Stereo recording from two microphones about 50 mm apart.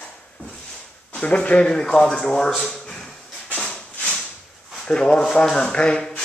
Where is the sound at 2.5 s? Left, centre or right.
Centre.